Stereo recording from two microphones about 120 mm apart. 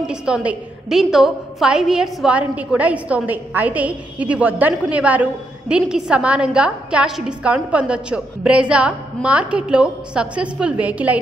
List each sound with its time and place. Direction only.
0.0 s a woman's voice: 5° right (ahead or behind)